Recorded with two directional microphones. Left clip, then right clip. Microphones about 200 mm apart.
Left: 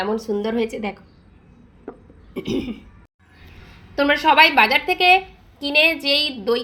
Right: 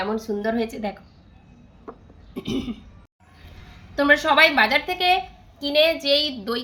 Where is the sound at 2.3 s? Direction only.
5° left (ahead or behind).